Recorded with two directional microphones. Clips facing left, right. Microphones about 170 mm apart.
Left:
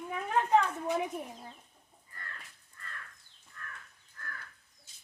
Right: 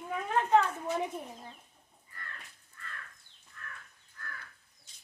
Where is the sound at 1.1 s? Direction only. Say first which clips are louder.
Left 1 dB; 15° left (ahead or behind).